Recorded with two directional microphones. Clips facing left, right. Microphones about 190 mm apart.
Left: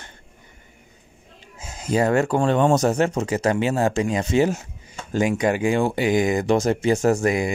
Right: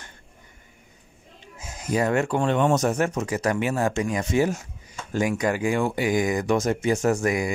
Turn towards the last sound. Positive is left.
turn(degrees=25)  # may be behind; listen again after turning